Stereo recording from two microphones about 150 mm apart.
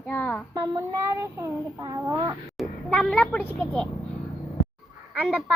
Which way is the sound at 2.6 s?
5° left (ahead or behind).